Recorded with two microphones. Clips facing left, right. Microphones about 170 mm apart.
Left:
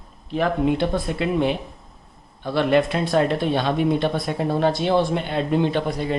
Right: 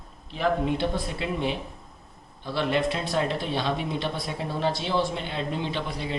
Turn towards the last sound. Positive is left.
turn(degrees=50)  # may be behind; listen again after turning